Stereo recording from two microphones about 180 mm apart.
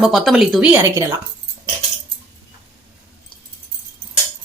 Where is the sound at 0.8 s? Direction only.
15° right (ahead or behind).